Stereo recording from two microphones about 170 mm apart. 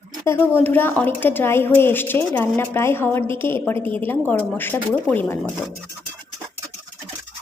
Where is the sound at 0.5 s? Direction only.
10° left (ahead or behind).